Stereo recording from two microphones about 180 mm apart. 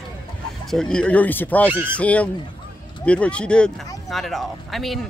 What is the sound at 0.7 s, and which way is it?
Speech, 5° left (ahead or behind).